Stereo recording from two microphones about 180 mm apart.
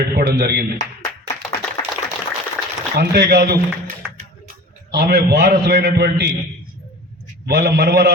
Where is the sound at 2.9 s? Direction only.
65° right (ahead or behind).